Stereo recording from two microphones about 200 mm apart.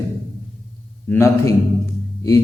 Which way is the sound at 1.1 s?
15° left (ahead or behind).